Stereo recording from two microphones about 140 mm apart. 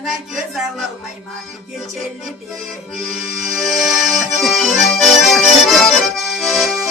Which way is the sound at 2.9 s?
65° right (ahead or behind).